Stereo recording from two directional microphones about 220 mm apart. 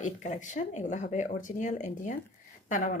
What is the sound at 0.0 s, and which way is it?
Speech, 35° left (ahead or behind).